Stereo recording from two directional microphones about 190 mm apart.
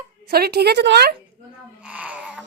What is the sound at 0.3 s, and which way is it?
Speech, 55° right (ahead or behind).